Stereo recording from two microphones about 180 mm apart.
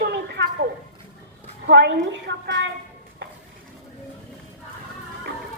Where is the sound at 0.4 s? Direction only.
80° right.